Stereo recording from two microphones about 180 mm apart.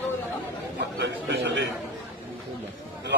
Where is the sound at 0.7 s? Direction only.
70° right (ahead or behind).